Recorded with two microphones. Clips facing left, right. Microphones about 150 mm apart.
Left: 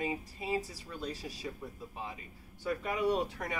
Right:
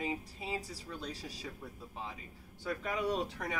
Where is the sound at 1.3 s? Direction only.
20° left (ahead or behind).